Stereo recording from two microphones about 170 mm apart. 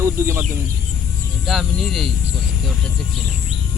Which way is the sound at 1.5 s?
Centre (ahead or behind).